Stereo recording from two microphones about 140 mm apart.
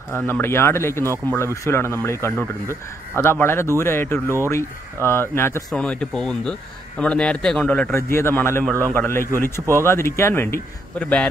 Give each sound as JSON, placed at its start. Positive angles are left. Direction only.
{"t": 0.1, "sound": "a man's voice", "side_deg": 15}
{"t": 5.7, "sound": "a man's voice", "side_deg": 5}
{"t": 7.9, "sound": "a man's voice", "side_deg": 20}